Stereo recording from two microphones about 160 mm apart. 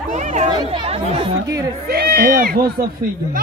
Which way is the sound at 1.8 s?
75° right (ahead or behind).